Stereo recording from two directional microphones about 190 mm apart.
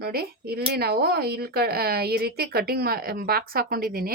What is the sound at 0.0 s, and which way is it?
Speech, 55° right (ahead or behind).